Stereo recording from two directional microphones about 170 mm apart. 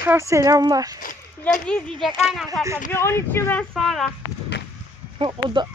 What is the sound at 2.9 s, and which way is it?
Speech, 15° left (ahead or behind).